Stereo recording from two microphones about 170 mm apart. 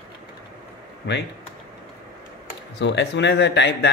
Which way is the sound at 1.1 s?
90° left.